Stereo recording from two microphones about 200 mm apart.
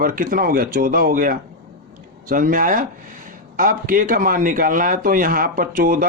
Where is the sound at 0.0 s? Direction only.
45° right (ahead or behind).